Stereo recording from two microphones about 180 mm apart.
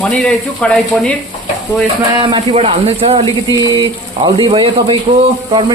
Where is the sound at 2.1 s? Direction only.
25° right (ahead or behind).